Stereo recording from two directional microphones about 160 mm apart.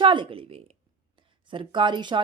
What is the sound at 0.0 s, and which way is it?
Speech, 30° right (ahead or behind).